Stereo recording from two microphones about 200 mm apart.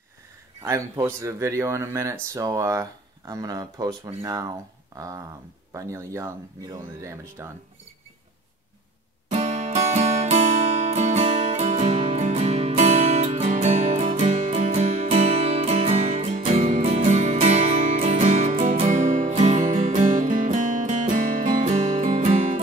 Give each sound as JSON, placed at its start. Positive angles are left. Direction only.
{"t": 0.6, "sound": "speech", "side_deg": -15}
{"t": 9.3, "sound": "music", "side_deg": -35}